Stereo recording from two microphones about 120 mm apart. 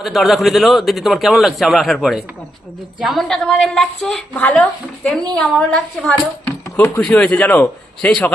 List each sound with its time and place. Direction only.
0.0 s a man's voice: centre (ahead or behind)
6.4 s a man's voice: 20° left (ahead or behind)